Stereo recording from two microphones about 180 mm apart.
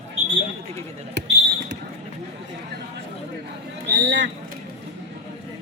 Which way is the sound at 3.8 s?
75° right (ahead or behind).